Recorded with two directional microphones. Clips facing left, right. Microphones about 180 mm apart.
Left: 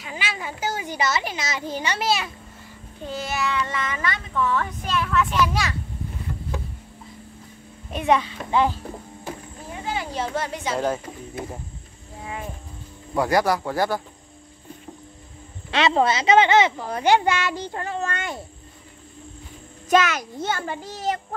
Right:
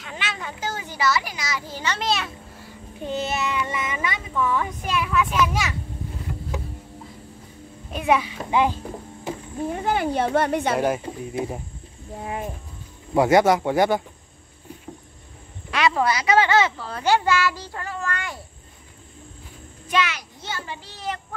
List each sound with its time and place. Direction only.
0.0 s a child's voice: 5° left (ahead or behind)
3.0 s a child's voice: 20° right (ahead or behind)
7.9 s a child's voice: 5° right (ahead or behind)
9.7 s speech: 55° right (ahead or behind)
10.8 s a child's voice: 15° right (ahead or behind)
12.2 s cricket: 45° right (ahead or behind)
13.1 s speech: 25° right (ahead or behind)
15.7 s a child's voice: 25° left (ahead or behind)
19.9 s a child's voice: 45° left (ahead or behind)